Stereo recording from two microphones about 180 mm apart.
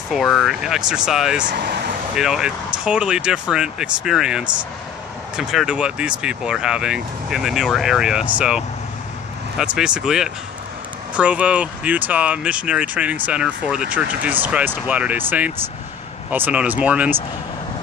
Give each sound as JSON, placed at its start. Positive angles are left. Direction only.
{"t": 0.1, "sound": "speech", "side_deg": 0}
{"t": 1.5, "sound": "speech", "side_deg": -65}
{"t": 2.1, "sound": "speech", "side_deg": -5}